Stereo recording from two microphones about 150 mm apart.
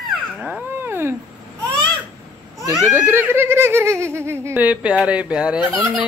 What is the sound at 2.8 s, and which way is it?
Giggle, 15° right (ahead or behind).